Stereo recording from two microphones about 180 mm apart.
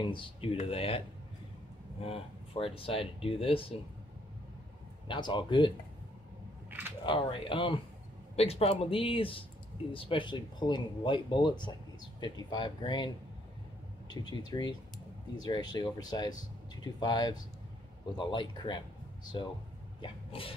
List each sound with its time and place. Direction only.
0.0 s speech: 30° left (ahead or behind)
5.0 s speech: 25° left (ahead or behind)
7.1 s speech: 30° left (ahead or behind)
14.5 s speech: 25° left (ahead or behind)
20.0 s sneeze: 30° left (ahead or behind)